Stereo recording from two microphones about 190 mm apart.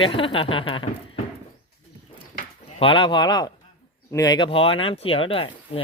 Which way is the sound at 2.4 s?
30° left (ahead or behind).